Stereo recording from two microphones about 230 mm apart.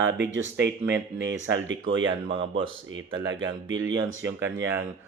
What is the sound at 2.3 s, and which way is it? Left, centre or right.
Speech, right.